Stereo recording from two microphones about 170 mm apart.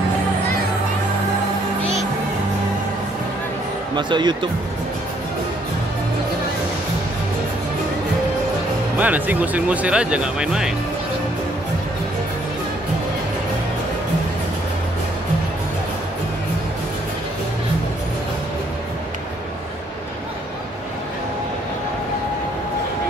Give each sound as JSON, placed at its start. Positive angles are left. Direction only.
{"t": 3.9, "sound": "speech", "side_deg": -25}
{"t": 8.9, "sound": "speech", "side_deg": -10}